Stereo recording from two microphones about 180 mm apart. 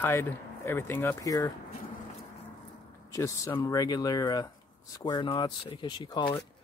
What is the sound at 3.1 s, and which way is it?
Speech, 15° left (ahead or behind).